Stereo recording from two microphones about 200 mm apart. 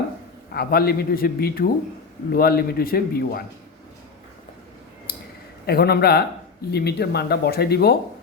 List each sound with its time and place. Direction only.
0.5 s speech: 50° left (ahead or behind)
5.6 s speech: 50° left (ahead or behind)